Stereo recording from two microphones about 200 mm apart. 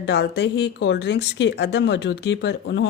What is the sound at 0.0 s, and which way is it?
Speech, 60° left (ahead or behind).